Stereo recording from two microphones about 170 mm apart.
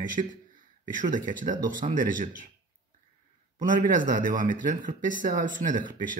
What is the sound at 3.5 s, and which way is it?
Speech, 50° right (ahead or behind).